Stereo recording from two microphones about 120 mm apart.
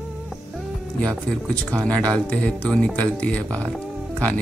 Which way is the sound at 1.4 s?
10° left (ahead or behind).